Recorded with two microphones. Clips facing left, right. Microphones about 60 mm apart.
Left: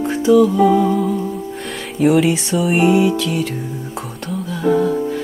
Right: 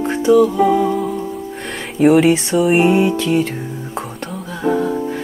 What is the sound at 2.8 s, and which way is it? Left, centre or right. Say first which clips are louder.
Music: even; right.